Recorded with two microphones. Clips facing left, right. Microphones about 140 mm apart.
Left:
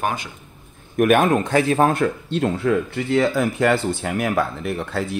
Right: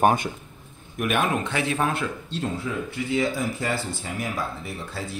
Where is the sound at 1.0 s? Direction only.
50° left (ahead or behind); by 5.0 s 65° left (ahead or behind).